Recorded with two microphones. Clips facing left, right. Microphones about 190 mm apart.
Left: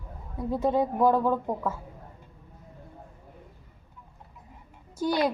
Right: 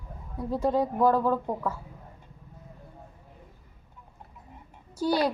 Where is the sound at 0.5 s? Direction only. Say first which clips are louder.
Even; 5° left (ahead or behind).